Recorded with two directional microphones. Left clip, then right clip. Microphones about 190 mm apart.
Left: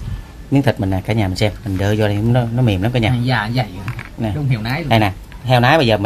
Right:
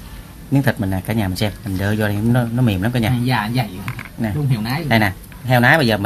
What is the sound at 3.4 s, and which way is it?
Speech, 25° left (ahead or behind).